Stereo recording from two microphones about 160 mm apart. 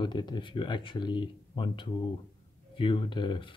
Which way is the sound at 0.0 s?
30° left (ahead or behind).